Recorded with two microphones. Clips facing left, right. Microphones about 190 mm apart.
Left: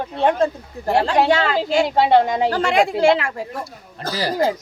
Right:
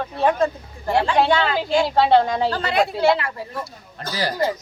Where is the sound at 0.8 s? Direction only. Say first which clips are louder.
Left 1 dB; 40° left (ahead or behind).